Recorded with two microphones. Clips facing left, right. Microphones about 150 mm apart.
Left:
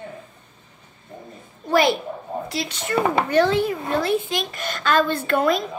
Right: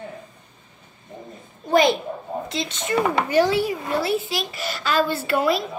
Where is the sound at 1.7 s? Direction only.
20° right (ahead or behind).